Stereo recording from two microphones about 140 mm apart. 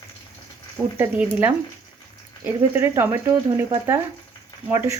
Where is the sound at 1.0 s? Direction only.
10° right (ahead or behind).